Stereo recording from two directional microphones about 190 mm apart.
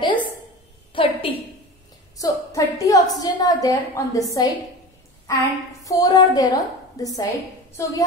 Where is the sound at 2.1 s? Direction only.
20° left (ahead or behind).